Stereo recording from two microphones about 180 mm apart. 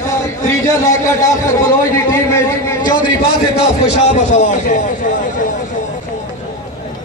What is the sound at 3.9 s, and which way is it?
A man's voice, 45° left (ahead or behind).